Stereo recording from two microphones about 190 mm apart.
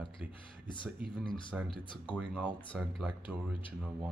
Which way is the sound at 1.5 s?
5° right (ahead or behind).